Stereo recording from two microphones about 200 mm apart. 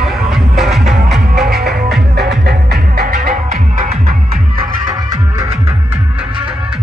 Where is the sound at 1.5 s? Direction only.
50° right (ahead or behind).